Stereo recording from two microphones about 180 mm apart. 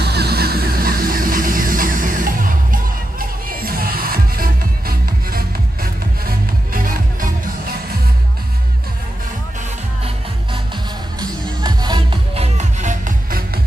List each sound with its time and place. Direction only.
0.0 s music: 65° right (ahead or behind)
11.1 s music: 20° right (ahead or behind)
12.5 s music: 40° right (ahead or behind)